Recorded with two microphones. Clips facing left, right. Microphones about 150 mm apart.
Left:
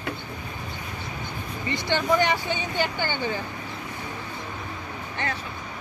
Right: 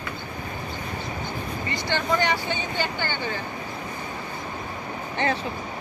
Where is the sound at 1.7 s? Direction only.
20° left (ahead or behind).